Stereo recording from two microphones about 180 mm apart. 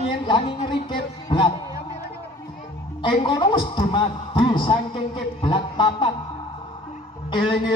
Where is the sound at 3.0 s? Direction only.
25° left (ahead or behind).